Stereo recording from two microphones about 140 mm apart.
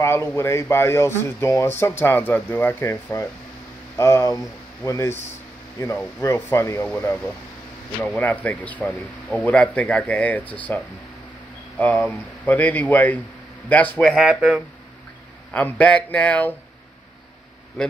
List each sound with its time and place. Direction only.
0.0 s speech: 20° left (ahead or behind)
6.2 s speech: 20° left (ahead or behind)
11.8 s speech: 10° left (ahead or behind)
14.1 s speech: centre (ahead or behind)
15.5 s speech: 10° left (ahead or behind)
17.8 s speech: 5° left (ahead or behind)